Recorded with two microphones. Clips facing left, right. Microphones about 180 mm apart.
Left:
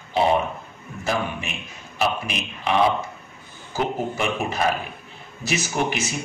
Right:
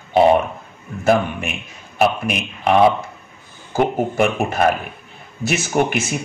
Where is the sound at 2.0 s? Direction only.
55° right (ahead or behind).